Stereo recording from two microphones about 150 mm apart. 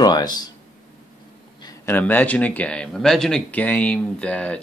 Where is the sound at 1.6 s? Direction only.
20° left (ahead or behind).